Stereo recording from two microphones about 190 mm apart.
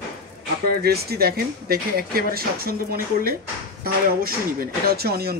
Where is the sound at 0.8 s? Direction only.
55° right (ahead or behind).